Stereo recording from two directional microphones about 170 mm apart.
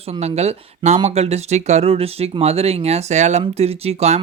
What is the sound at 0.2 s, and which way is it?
Speech, 40° right (ahead or behind).